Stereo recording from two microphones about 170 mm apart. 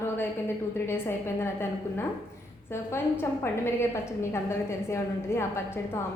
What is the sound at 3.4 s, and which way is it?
A woman's voice, 15° left (ahead or behind).